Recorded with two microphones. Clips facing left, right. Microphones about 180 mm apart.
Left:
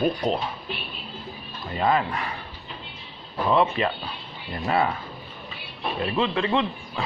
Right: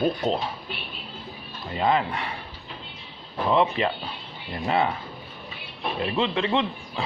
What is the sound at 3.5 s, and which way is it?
Speech, 25° right (ahead or behind).